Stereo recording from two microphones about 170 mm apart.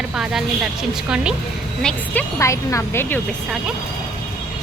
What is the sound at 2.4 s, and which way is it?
Speech, 15° left (ahead or behind).